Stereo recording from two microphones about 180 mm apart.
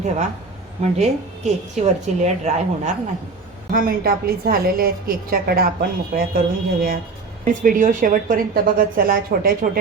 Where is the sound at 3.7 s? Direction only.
55° right (ahead or behind).